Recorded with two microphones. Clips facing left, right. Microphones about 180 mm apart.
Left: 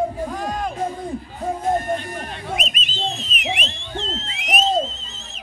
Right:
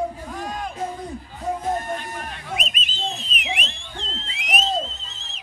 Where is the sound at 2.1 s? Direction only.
30° left (ahead or behind).